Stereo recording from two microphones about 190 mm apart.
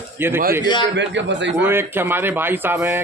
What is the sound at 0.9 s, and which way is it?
Speech, 70° right (ahead or behind).